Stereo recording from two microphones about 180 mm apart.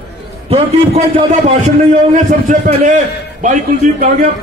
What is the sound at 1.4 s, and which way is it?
A man's voice, 40° right (ahead or behind).